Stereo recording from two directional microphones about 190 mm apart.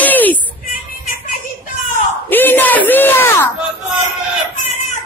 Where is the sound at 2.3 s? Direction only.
10° left (ahead or behind).